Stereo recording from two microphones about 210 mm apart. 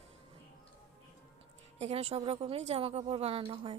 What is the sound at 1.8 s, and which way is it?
A woman's voice, 30° right (ahead or behind).